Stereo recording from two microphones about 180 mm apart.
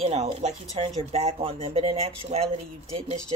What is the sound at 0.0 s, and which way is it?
Speech, 35° right (ahead or behind).